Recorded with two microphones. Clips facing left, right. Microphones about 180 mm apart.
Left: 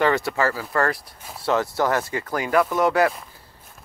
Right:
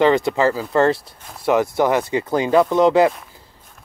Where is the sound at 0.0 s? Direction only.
20° right (ahead or behind).